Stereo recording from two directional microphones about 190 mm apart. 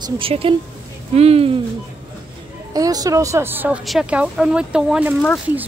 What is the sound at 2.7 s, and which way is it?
Speech, 20° right (ahead or behind).